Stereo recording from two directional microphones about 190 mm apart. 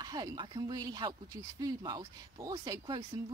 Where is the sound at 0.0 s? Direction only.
20° right (ahead or behind).